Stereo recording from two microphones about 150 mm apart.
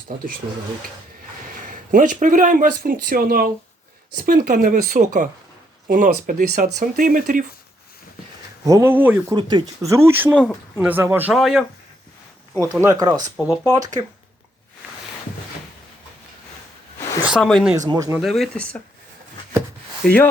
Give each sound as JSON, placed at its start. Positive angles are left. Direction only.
{"t": 1.9, "sound": "speech", "side_deg": -65}
{"t": 4.3, "sound": "speech", "side_deg": -70}
{"t": 8.6, "sound": "speech", "side_deg": -20}
{"t": 9.3, "sound": "speech", "side_deg": -30}
{"t": 9.9, "sound": "speech", "side_deg": -15}
{"t": 11.3, "sound": "speech", "side_deg": 0}
{"t": 12.8, "sound": "speech", "side_deg": -25}
{"t": 17.2, "sound": "speech", "side_deg": 0}
{"t": 17.7, "sound": "speech", "side_deg": -25}
{"t": 18.2, "sound": "speech", "side_deg": 0}
{"t": 20.0, "sound": "speech", "side_deg": 0}